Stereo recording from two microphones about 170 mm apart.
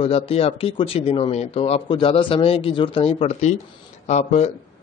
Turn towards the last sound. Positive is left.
turn(degrees=45)  # may be behind; listen again after turning